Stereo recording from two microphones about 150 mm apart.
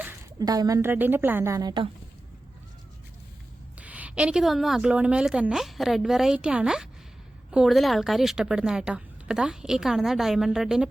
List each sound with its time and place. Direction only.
0.3 s a woman's voice: 25° right (ahead or behind)
3.8 s speech: 10° right (ahead or behind)